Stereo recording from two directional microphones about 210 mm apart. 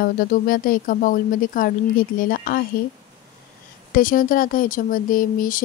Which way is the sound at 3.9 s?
40° left (ahead or behind).